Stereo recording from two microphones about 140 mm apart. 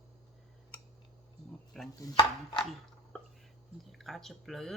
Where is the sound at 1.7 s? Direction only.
Centre (ahead or behind).